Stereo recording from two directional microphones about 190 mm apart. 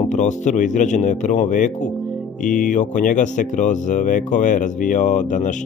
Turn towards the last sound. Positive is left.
turn(degrees=40)  # may be behind; listen again after turning